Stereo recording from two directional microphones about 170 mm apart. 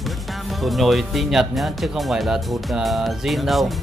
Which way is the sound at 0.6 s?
Centre (ahead or behind).